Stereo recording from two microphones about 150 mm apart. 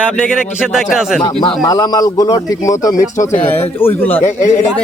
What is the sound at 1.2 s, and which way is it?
Speech, 40° left (ahead or behind).